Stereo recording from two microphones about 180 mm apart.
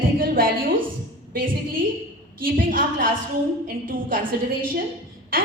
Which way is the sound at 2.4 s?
50° right (ahead or behind).